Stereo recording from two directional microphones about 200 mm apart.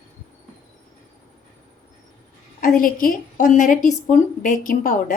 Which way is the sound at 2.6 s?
45° left (ahead or behind).